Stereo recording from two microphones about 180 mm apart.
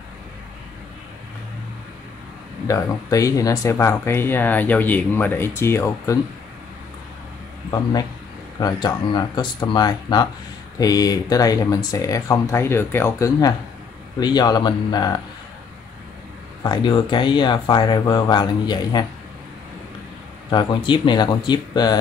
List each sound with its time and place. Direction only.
2.7 s speech: 20° left (ahead or behind)
8.5 s speech: 20° left (ahead or behind)
16.6 s speech: 25° left (ahead or behind)
20.4 s speech: 25° left (ahead or behind)